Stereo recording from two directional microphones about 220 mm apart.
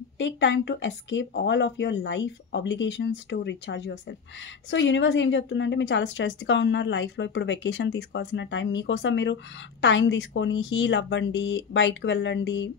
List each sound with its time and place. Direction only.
0.2 s a woman's voice: 55° left (ahead or behind)